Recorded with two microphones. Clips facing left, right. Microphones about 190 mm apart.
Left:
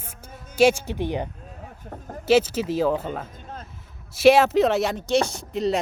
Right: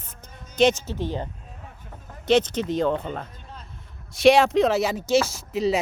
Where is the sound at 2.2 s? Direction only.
5° left (ahead or behind).